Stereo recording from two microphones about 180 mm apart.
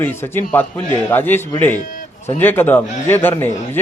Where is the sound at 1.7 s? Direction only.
45° left (ahead or behind).